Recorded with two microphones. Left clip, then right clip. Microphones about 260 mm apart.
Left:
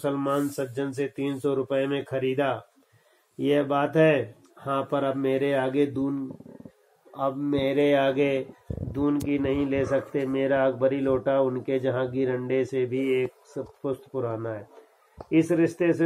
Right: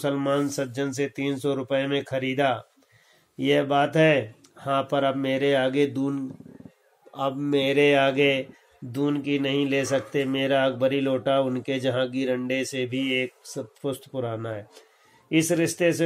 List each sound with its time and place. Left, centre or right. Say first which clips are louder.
0.0 s speech: right 2 dB; right
7.2 s speech: right 2 dB; right